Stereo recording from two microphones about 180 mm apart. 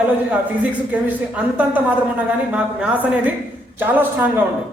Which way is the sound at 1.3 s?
10° right (ahead or behind).